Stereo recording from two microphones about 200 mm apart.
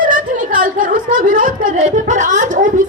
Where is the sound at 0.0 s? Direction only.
40° right (ahead or behind).